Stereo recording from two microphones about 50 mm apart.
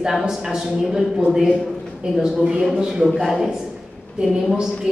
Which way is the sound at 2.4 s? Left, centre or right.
Centre.